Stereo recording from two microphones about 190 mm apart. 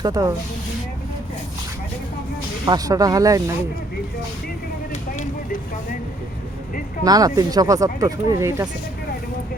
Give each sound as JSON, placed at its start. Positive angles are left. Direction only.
{"t": 0.0, "sound": "speech", "side_deg": -20}
{"t": 2.6, "sound": "speech", "side_deg": -20}
{"t": 5.1, "sound": "vehicle", "side_deg": 40}
{"t": 7.0, "sound": "speech", "side_deg": -20}